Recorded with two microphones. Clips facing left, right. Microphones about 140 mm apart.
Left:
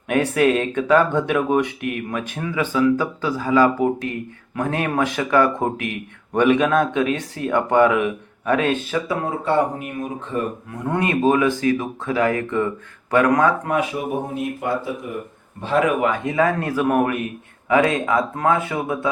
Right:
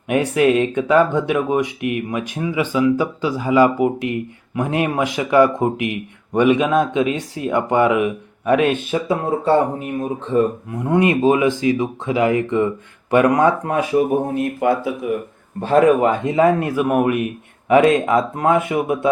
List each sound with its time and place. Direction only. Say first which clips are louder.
0.1 s speech: right 2 dB; 10° right (ahead or behind)
8.9 s a man's voice: right 4 dB; 30° right (ahead or behind)
10.8 s a man's voice: right 4 dB; 15° right (ahead or behind)
14.6 s speech: right 7 dB; 70° right (ahead or behind)
15.6 s a man's voice: right 5 dB; 40° right (ahead or behind); by 18.9 s 20° right (ahead or behind)